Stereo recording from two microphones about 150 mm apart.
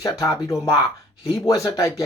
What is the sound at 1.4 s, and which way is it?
Speech, 20° left (ahead or behind).